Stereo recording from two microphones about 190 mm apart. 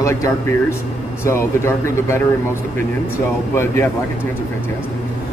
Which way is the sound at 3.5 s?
15° left (ahead or behind).